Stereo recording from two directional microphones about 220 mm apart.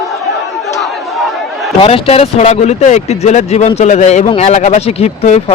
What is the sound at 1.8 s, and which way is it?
Speech, 25° left (ahead or behind).